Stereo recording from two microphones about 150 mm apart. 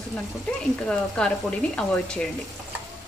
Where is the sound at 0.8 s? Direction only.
5° left (ahead or behind).